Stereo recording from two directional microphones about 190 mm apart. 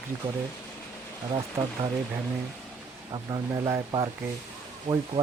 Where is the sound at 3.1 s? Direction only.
20° right (ahead or behind).